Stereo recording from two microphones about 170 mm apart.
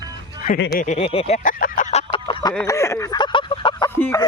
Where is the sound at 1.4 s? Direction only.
50° left (ahead or behind); by 2.5 s 25° left (ahead or behind).